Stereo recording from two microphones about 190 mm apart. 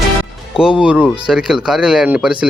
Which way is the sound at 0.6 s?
5° right (ahead or behind).